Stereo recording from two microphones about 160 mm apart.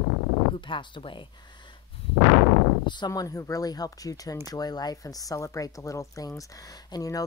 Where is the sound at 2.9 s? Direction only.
25° left (ahead or behind).